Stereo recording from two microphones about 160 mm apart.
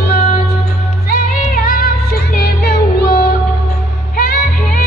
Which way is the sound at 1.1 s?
65° left (ahead or behind).